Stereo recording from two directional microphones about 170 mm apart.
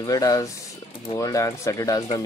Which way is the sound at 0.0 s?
20° left (ahead or behind).